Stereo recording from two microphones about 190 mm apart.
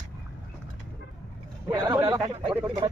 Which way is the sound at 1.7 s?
20° right (ahead or behind).